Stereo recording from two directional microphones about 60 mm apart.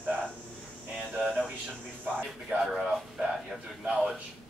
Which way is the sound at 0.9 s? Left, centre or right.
Centre.